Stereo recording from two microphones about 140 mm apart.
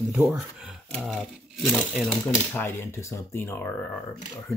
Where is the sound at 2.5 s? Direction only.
15° left (ahead or behind).